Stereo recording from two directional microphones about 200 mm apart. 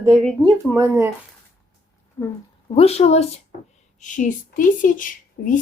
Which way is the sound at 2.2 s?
10° left (ahead or behind).